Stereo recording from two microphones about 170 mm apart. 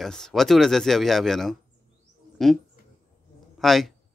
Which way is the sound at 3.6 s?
Centre (ahead or behind).